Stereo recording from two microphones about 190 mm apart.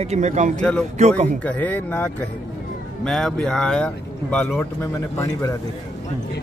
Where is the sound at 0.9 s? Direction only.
35° right (ahead or behind).